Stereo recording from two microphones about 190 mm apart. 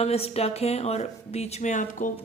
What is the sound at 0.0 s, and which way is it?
Speech, 35° left (ahead or behind).